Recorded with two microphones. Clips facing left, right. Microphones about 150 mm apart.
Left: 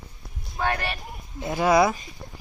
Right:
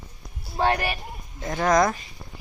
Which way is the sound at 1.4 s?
10° left (ahead or behind).